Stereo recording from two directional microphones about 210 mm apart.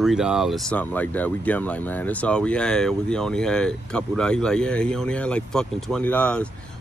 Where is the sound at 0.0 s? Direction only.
Centre (ahead or behind).